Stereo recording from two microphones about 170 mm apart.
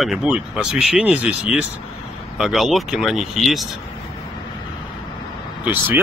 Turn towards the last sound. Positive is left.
turn(degrees=-10)  # may be behind; listen again after turning